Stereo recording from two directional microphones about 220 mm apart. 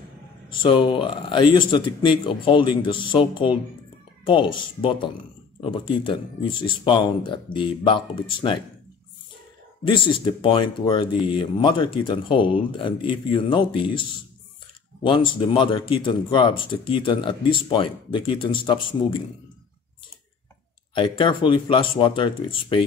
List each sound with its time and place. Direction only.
0.5 s speech: 20° left (ahead or behind)
9.8 s speech: 20° left (ahead or behind)
15.0 s speech: 20° left (ahead or behind)
20.9 s speech: 20° left (ahead or behind)